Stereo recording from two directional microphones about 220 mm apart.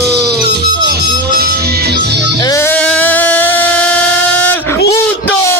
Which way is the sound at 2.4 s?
15° left (ahead or behind).